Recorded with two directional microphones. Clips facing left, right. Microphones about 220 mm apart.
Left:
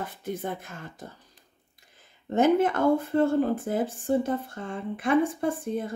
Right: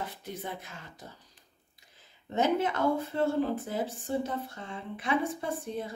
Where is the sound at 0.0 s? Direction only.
50° left (ahead or behind).